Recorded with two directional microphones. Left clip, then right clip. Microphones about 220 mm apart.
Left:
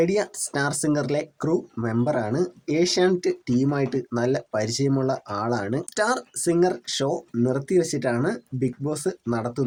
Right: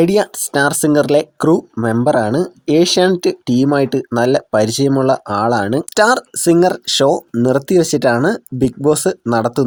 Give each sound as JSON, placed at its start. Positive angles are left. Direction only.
{"t": 0.0, "sound": "speech", "side_deg": -35}